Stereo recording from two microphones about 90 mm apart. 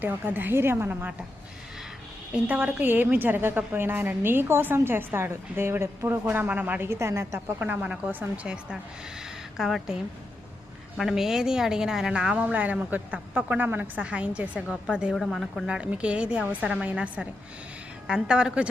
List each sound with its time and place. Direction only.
0.0 s a woman's voice: 20° right (ahead or behind)
2.3 s a woman's voice: 20° right (ahead or behind)
6.3 s a woman's voice: 20° right (ahead or behind)
9.6 s a woman's voice: 5° right (ahead or behind)
10.9 s a woman's voice: 5° right (ahead or behind)
15.1 s a woman's voice: centre (ahead or behind)
15.6 s a woman's voice: 10° right (ahead or behind)